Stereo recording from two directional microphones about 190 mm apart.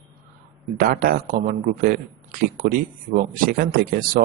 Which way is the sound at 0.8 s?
50° right (ahead or behind).